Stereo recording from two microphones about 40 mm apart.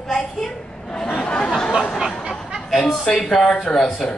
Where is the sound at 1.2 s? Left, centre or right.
Left.